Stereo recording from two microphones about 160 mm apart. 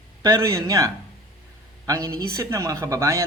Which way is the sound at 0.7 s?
20° right (ahead or behind).